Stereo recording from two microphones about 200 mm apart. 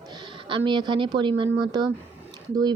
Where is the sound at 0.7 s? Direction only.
25° right (ahead or behind).